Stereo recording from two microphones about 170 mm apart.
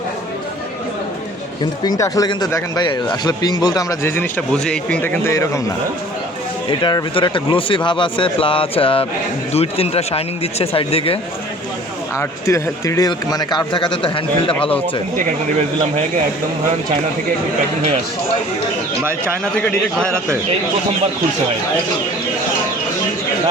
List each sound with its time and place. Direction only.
1.8 s speech: 20° left (ahead or behind)
6.7 s speech: 30° left (ahead or behind)
12.1 s speech: 15° left (ahead or behind)
19.5 s a man's voice: 5° left (ahead or behind)